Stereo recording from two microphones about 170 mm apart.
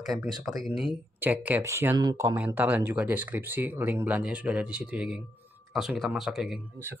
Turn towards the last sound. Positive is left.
turn(degrees=-5)  # may be behind; listen again after turning